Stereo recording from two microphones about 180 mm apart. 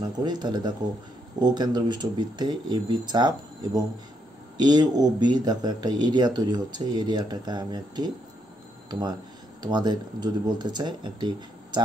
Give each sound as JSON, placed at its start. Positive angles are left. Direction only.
{"t": 0.0, "sound": "speech", "side_deg": -25}
{"t": 9.6, "sound": "speech", "side_deg": -25}